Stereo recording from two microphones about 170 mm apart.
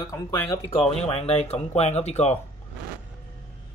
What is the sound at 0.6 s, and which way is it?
Speech, 35° left (ahead or behind).